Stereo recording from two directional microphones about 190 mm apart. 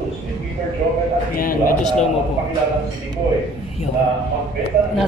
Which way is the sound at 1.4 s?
50° left (ahead or behind).